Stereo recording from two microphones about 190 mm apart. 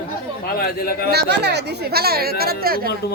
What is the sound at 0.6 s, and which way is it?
Speech, 55° left (ahead or behind).